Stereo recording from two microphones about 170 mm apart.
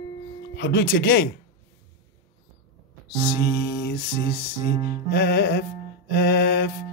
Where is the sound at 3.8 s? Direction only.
70° left (ahead or behind).